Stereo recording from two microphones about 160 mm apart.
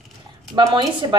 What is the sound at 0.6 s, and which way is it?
Speech, 25° right (ahead or behind).